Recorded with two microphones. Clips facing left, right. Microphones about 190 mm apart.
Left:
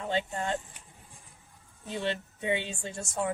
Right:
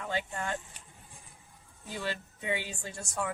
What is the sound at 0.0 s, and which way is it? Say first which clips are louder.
Speech: left 4 dB; 25° left (ahead or behind).